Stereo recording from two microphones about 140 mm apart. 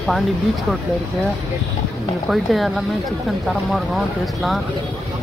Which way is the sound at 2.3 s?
Centre (ahead or behind).